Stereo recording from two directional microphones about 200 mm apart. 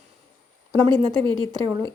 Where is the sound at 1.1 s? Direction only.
25° right (ahead or behind).